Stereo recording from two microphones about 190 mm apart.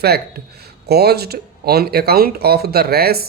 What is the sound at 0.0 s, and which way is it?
Speech, 55° right (ahead or behind).